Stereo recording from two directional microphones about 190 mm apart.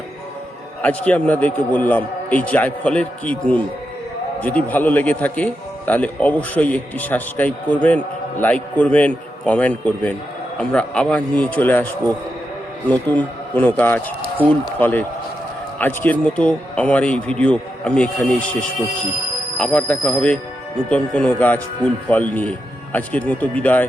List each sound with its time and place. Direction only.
0.8 s a man's voice: 5° left (ahead or behind)
13.1 s a man's voice: 10° left (ahead or behind)
19.5 s a man's voice: 5° left (ahead or behind)